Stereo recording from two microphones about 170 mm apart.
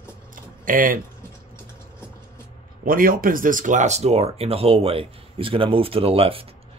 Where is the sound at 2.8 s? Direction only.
55° right (ahead or behind).